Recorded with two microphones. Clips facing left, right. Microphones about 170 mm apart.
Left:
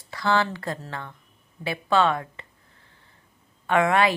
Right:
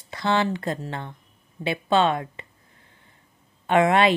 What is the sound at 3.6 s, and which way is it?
Speech, 20° right (ahead or behind).